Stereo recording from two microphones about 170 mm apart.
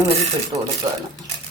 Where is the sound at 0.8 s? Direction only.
25° right (ahead or behind).